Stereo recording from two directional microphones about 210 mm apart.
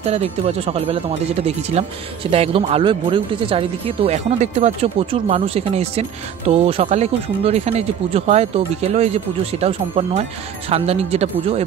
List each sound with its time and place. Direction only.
0.0 s speech: 30° right (ahead or behind)